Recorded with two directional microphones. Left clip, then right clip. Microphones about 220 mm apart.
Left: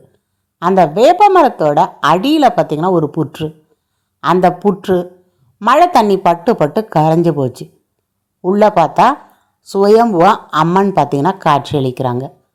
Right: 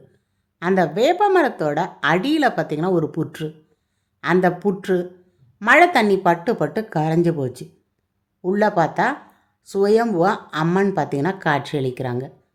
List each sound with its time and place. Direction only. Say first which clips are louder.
0.6 s speech: left 9 dB; 15° left (ahead or behind)